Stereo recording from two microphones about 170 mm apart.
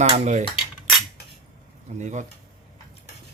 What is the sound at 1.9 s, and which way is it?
Speech, 45° right (ahead or behind).